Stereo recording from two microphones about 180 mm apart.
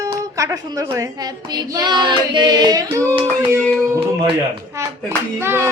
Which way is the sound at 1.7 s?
25° right (ahead or behind).